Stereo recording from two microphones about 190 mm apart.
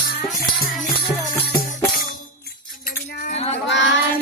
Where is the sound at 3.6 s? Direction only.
70° left (ahead or behind).